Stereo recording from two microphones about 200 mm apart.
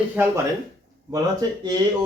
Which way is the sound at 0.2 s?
10° right (ahead or behind).